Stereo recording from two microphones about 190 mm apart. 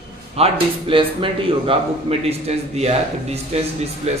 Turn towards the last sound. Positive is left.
turn(degrees=-35)  # may be behind; listen again after turning